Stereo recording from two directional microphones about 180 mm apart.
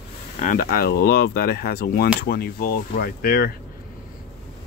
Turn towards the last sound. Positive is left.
turn(degrees=55)  # may be behind; listen again after turning